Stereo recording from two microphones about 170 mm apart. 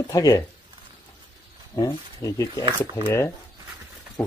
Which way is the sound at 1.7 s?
20° left (ahead or behind).